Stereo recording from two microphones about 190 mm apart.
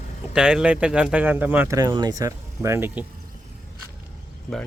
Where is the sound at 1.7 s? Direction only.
20° right (ahead or behind).